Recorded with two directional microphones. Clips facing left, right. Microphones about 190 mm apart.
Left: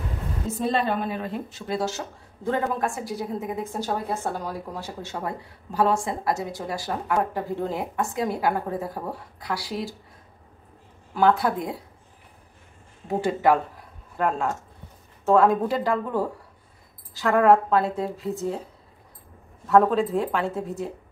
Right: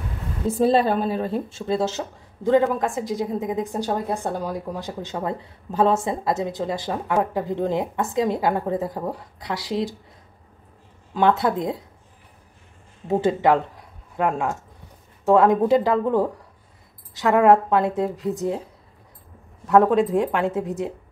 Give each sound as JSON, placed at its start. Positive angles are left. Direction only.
{"t": 0.5, "sound": "a woman's voice", "side_deg": -35}
{"t": 11.1, "sound": "a woman's voice", "side_deg": -25}
{"t": 13.2, "sound": "a woman's voice", "side_deg": -20}
{"t": 19.7, "sound": "a woman's voice", "side_deg": -15}